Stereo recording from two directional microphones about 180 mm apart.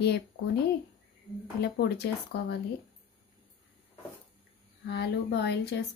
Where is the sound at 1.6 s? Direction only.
65° left (ahead or behind).